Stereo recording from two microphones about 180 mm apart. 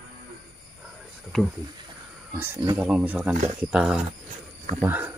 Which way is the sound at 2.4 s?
10° right (ahead or behind).